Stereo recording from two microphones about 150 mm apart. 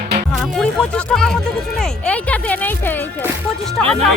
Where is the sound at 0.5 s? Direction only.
5° left (ahead or behind).